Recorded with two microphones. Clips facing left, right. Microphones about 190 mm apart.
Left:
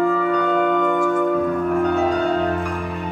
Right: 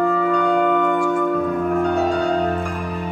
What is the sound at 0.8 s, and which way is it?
Music, 50° left (ahead or behind).